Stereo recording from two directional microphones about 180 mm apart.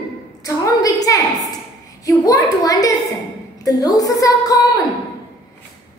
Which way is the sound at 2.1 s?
20° left (ahead or behind).